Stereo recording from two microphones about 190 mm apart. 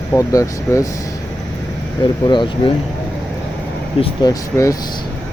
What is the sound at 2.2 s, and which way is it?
Speech, 25° left (ahead or behind).